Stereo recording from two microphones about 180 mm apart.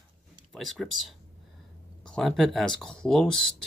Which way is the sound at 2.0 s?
5° left (ahead or behind).